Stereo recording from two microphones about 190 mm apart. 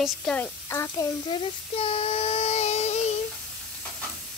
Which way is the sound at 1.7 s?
30° left (ahead or behind).